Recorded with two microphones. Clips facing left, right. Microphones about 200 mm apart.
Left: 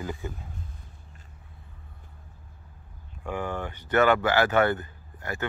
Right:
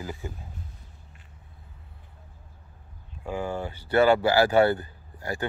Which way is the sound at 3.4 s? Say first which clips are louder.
Right 1 dB; 10° right (ahead or behind).